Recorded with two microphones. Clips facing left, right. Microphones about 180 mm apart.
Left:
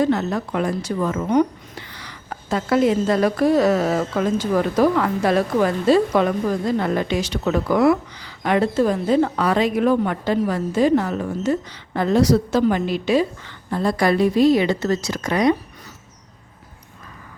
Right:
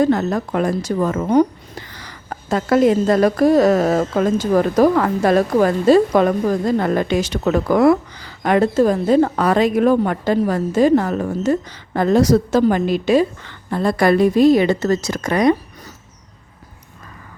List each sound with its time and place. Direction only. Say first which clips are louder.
0.0 s a woman's voice: right 3 dB; 45° right (ahead or behind)
13.7 s a woman's voice: right 3 dB; 60° right (ahead or behind)